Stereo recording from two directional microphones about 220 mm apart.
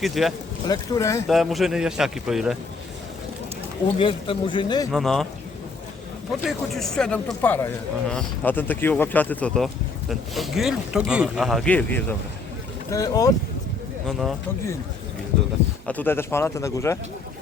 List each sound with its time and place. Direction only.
0.0 s speech: centre (ahead or behind)
0.7 s speech: 15° left (ahead or behind)
1.3 s speech: centre (ahead or behind)
3.9 s speech: 25° left (ahead or behind)
4.9 s speech: centre (ahead or behind)
6.4 s speech: centre (ahead or behind)
14.1 s speech: centre (ahead or behind)
15.9 s speech: 10° left (ahead or behind)